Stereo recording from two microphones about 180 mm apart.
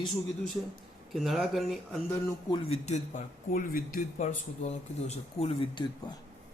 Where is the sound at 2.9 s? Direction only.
50° left (ahead or behind); by 6.1 s 25° left (ahead or behind).